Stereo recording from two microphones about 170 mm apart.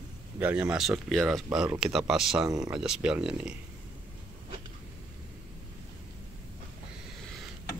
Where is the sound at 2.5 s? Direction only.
20° right (ahead or behind).